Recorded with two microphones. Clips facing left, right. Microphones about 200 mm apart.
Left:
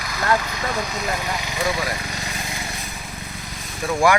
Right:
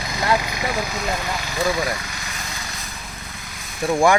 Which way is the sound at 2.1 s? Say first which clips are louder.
Left 3 dB; 30° left (ahead or behind).